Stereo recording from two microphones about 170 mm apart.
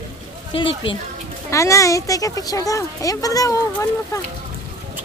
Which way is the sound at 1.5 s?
20° left (ahead or behind).